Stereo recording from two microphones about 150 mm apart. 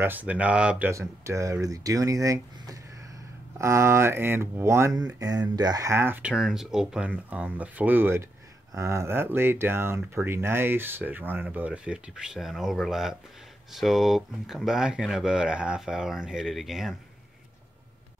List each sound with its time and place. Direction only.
0.0 s speech: 10° right (ahead or behind)